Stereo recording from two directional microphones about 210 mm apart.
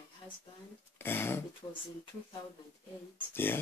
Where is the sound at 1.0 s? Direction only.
10° left (ahead or behind).